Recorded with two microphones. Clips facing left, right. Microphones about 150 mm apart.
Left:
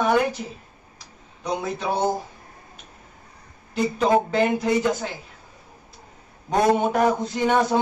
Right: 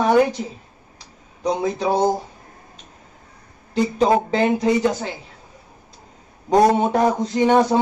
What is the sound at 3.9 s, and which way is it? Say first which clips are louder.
Speech: right 1 dB; 30° right (ahead or behind).